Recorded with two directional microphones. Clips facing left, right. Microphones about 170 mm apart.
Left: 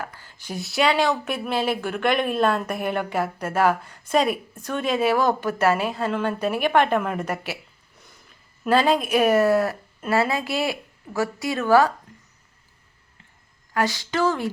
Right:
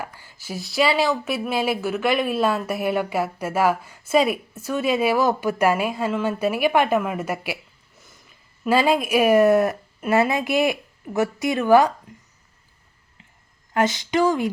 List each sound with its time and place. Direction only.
0.0 s speech: 10° right (ahead or behind)
8.6 s speech: 10° right (ahead or behind)
13.7 s speech: 20° right (ahead or behind)